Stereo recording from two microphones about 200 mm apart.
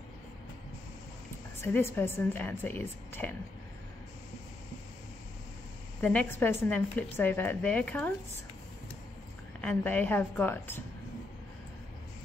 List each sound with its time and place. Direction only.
1.6 s a woman's voice: 10° left (ahead or behind)
5.9 s a woman's voice: 10° left (ahead or behind)
9.6 s a woman's voice: 5° left (ahead or behind)